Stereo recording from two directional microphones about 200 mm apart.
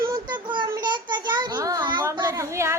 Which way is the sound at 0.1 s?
20° right (ahead or behind).